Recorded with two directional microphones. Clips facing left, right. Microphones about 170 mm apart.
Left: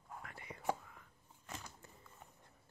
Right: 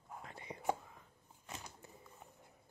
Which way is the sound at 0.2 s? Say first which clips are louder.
Right 2 dB; 20° right (ahead or behind).